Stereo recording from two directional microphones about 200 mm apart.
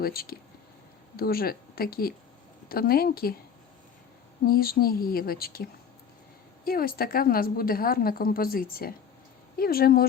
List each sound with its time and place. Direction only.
0.0 s a woman's voice: 50° left (ahead or behind)
4.4 s a woman's voice: 50° left (ahead or behind)
6.7 s a woman's voice: 45° left (ahead or behind)